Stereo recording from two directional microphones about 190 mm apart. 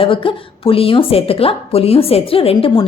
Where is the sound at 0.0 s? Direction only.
30° left (ahead or behind).